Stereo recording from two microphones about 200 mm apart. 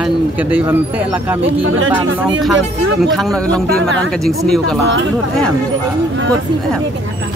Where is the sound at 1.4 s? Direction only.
80° right.